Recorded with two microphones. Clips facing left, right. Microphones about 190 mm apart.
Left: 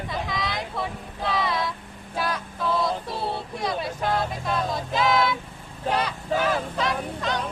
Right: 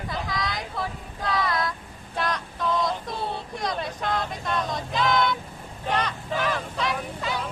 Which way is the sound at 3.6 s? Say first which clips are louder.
Left 1 dB; 5° left (ahead or behind).